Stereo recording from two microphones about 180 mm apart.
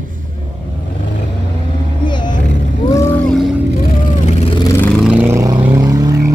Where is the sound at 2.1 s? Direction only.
25° left (ahead or behind).